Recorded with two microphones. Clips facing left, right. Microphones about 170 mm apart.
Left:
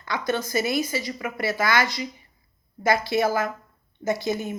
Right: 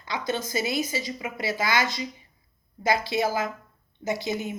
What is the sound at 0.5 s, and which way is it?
A woman's voice, 55° left (ahead or behind).